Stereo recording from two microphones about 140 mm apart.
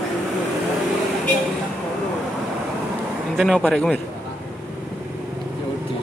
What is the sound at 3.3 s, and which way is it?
Speech, centre (ahead or behind).